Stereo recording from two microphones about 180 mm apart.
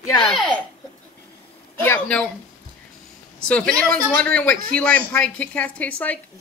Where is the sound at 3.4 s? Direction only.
5° left (ahead or behind).